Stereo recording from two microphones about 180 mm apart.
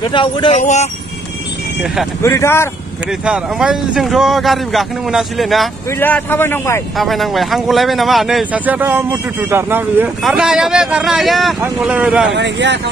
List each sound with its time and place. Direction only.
0.0 s speech: 25° left (ahead or behind)
2.2 s a man's voice: 15° left (ahead or behind)
3.1 s speech: 5° right (ahead or behind)
5.9 s a man's voice: 10° left (ahead or behind)
7.0 s speech: centre (ahead or behind)
12.3 s speech: 75° right (ahead or behind)